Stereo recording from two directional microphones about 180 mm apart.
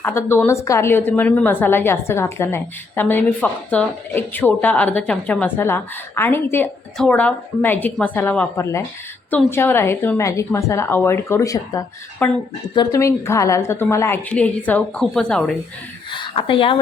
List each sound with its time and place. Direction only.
0.0 s a woman's voice: 15° left (ahead or behind)
12.2 s a woman's voice: 10° left (ahead or behind)
12.7 s a woman's voice: 20° left (ahead or behind); by 15.5 s 5° left (ahead or behind)
16.1 s speech: 25° left (ahead or behind)